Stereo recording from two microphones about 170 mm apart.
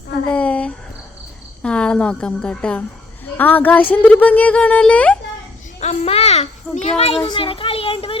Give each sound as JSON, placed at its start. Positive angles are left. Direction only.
{"t": 0.3, "sound": "speech", "side_deg": 5}
{"t": 5.8, "sound": "a child's voice", "side_deg": 40}